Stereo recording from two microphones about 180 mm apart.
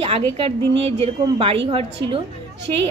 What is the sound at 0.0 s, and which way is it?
Speech, 30° right (ahead or behind).